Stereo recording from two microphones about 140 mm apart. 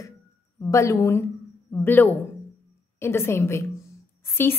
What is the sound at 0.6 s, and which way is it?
A woman's voice, 20° left (ahead or behind).